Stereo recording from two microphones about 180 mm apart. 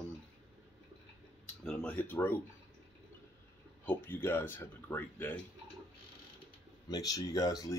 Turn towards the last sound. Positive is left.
turn(degrees=20)  # may be behind; listen again after turning